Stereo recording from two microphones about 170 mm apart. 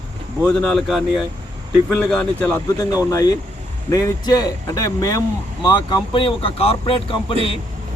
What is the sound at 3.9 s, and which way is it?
Speech, 20° left (ahead or behind).